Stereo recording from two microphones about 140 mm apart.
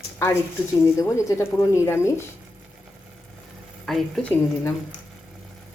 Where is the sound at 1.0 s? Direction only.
20° left (ahead or behind).